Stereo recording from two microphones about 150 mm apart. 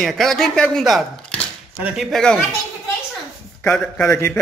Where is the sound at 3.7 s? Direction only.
5° left (ahead or behind).